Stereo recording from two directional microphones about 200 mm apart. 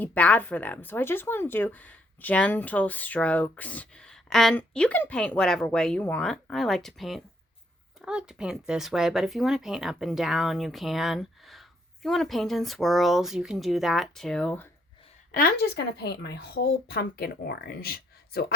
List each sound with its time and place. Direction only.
0.0 s speech: 5° left (ahead or behind)
15.3 s speech: 45° left (ahead or behind)